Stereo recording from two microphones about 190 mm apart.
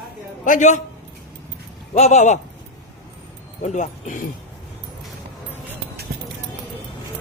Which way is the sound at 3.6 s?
40° left (ahead or behind).